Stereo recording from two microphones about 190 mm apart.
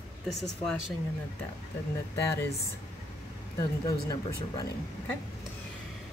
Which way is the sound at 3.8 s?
20° left (ahead or behind).